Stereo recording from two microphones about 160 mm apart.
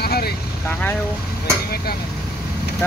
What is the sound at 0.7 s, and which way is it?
Speech, 10° left (ahead or behind).